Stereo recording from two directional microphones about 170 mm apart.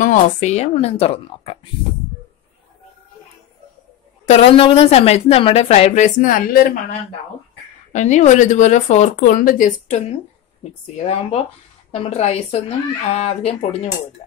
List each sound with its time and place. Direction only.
0.0 s a woman's voice: 45° left (ahead or behind)
4.3 s a woman's voice: 35° left (ahead or behind); by 6.8 s 55° left (ahead or behind)
7.9 s a woman's voice: 45° left (ahead or behind)